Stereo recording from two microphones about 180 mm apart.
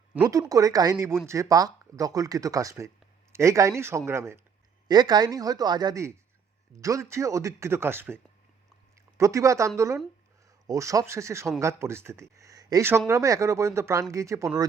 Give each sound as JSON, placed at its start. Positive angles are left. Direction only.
{"t": 0.3, "sound": "speech", "side_deg": -20}